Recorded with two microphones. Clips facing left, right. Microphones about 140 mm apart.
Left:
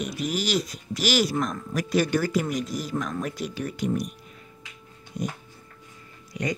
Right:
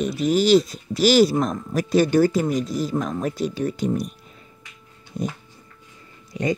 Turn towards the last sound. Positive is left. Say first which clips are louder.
# right 5 dB
turn(degrees=-30)  # may be behind; listen again after turning